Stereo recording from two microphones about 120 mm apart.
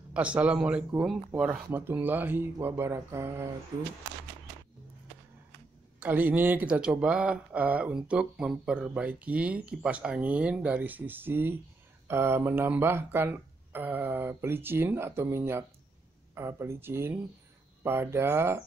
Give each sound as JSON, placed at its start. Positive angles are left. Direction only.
{"t": 0.1, "sound": "speech", "side_deg": -10}
{"t": 6.0, "sound": "speech", "side_deg": -15}